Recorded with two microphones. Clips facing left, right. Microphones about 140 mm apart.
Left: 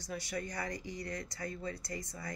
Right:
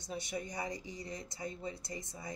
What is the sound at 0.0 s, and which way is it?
Speech, 20° right (ahead or behind).